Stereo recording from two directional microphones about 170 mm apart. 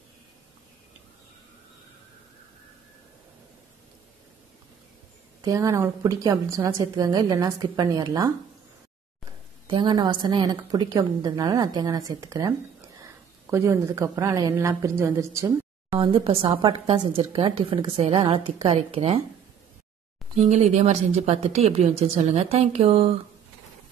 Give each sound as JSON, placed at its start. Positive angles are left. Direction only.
{"t": 5.4, "sound": "a woman's voice", "side_deg": -20}
{"t": 9.7, "sound": "a woman's voice", "side_deg": -30}
{"t": 16.0, "sound": "a woman's voice", "side_deg": -30}
{"t": 20.3, "sound": "a woman's voice", "side_deg": -40}